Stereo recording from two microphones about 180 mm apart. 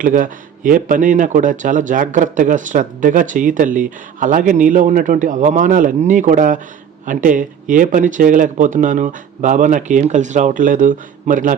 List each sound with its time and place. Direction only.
0.0 s speech: 50° right (ahead or behind)